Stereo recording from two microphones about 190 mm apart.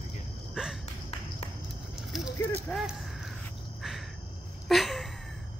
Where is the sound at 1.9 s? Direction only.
Centre (ahead or behind).